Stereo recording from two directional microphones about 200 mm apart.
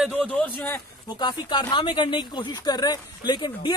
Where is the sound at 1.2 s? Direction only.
25° left (ahead or behind).